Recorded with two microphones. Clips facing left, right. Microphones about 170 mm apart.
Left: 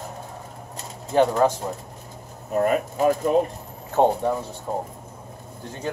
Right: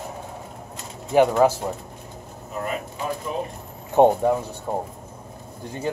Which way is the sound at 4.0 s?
15° right (ahead or behind).